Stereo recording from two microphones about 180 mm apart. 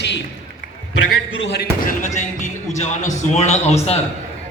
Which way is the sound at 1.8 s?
40° left (ahead or behind).